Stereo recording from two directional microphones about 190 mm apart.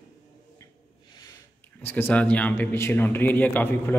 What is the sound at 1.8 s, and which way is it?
A man's voice, 10° left (ahead or behind).